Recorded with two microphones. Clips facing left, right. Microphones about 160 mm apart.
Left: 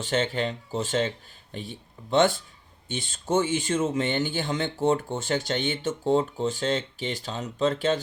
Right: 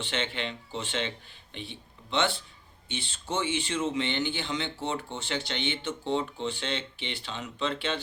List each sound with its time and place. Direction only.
0.0 s speech: 40° left (ahead or behind)